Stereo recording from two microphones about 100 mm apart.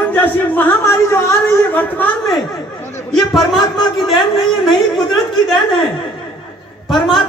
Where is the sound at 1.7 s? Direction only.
15° left (ahead or behind).